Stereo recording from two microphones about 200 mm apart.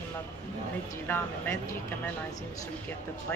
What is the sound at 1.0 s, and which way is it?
Speech, 10° left (ahead or behind).